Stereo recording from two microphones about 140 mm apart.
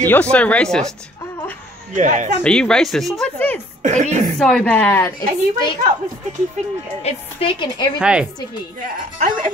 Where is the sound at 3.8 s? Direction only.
60° right (ahead or behind).